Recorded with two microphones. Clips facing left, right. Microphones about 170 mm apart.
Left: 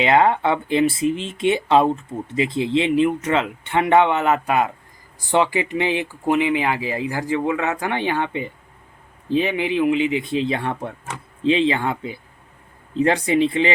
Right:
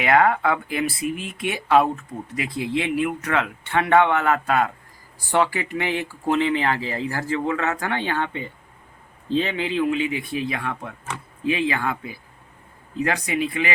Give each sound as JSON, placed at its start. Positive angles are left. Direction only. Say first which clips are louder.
{"t": 0.0, "sound": "speech", "louder": "left 2 dB", "side_deg": 25}